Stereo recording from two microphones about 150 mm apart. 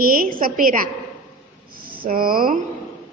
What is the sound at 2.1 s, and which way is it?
Speech, 75° right (ahead or behind).